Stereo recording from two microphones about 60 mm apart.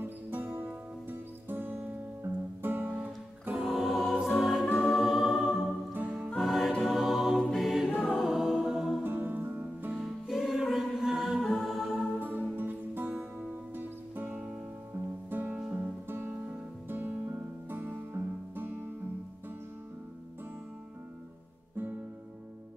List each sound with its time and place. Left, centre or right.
0.0 s music: right
2.9 s music: right
3.5 s music: centre
6.3 s choir: centre
8.1 s music: centre
9.0 s music: right
9.9 s music: centre
12.2 s music: right
14.2 s music: right
15.2 s music: right